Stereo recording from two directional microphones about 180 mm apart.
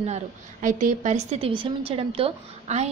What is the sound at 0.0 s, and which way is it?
A woman's voice, 40° right (ahead or behind).